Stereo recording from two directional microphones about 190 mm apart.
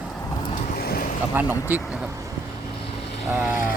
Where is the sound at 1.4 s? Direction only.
10° right (ahead or behind).